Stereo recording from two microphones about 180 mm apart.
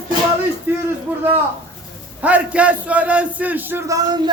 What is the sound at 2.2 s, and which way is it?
A man's voice, 5° right (ahead or behind).